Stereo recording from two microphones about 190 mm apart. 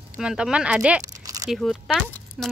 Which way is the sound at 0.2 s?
5° right (ahead or behind).